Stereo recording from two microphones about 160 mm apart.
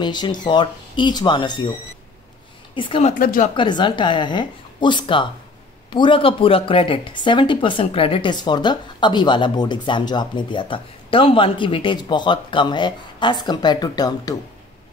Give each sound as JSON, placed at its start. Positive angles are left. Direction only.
{"t": 0.0, "sound": "speech", "side_deg": 25}
{"t": 2.7, "sound": "a woman's voice", "side_deg": 30}
{"t": 3.2, "sound": "speech", "side_deg": 60}
{"t": 3.5, "sound": "speech", "side_deg": 30}